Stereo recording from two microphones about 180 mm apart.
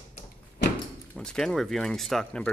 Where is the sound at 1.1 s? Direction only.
5° left (ahead or behind).